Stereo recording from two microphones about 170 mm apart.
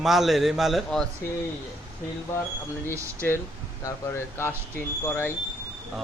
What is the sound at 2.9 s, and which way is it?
Speech, 15° right (ahead or behind).